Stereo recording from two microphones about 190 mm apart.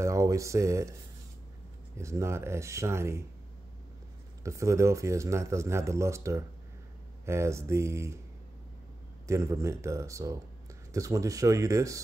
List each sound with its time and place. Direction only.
0.0 s speech: 15° right (ahead or behind)
2.0 s speech: 15° right (ahead or behind)
4.4 s speech: 15° right (ahead or behind)
9.3 s speech: 15° right (ahead or behind)